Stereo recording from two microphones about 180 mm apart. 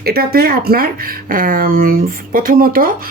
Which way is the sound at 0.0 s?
60° right (ahead or behind).